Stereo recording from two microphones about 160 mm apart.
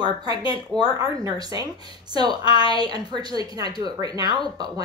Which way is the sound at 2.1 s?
25° right (ahead or behind).